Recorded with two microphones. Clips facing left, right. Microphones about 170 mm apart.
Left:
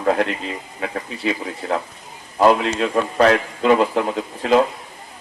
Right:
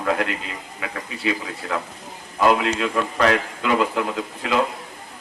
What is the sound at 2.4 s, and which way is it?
A man's voice, 35° left (ahead or behind).